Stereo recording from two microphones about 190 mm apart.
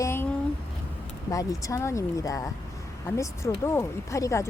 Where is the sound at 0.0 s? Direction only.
15° left (ahead or behind).